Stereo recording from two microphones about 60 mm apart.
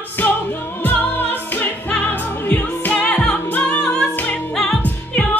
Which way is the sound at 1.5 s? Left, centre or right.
Left.